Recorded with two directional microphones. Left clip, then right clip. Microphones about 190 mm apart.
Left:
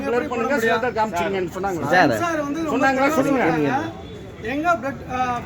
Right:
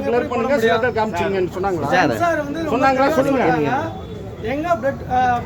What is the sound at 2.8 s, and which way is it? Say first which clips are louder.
Speech: right 3 dB; 55° left (ahead or behind).